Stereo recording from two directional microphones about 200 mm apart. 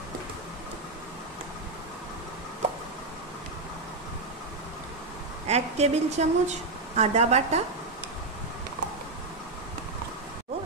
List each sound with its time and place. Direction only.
5.5 s a woman's voice: 35° right (ahead or behind)